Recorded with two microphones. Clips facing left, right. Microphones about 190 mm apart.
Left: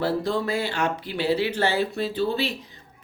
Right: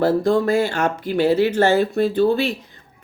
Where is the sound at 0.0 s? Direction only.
45° right (ahead or behind).